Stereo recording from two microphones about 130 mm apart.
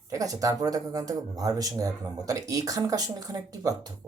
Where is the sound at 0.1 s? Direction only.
25° right (ahead or behind).